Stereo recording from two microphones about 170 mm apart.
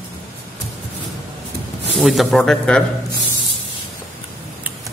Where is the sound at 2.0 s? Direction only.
Centre (ahead or behind).